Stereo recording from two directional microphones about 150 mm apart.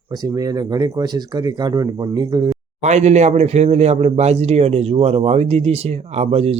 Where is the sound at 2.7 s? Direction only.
50° right (ahead or behind).